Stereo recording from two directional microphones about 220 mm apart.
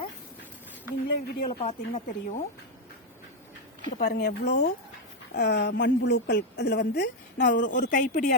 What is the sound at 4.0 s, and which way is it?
A woman's voice, 45° left (ahead or behind).